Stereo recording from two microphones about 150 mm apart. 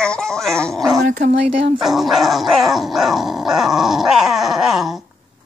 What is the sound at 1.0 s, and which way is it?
Speech, 60° right (ahead or behind).